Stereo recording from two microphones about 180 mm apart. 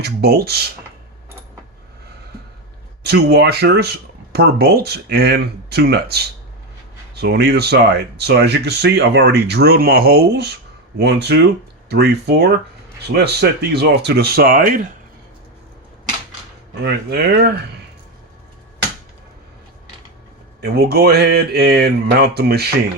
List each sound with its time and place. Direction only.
0.0 s speech: 60° right (ahead or behind)
3.0 s speech: 65° right (ahead or behind); by 14.8 s 50° right (ahead or behind)
16.8 s speech: 60° right (ahead or behind)
20.6 s speech: 60° right (ahead or behind)